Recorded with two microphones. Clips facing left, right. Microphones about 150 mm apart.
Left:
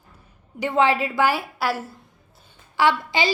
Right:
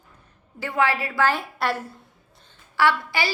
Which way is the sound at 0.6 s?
20° left (ahead or behind).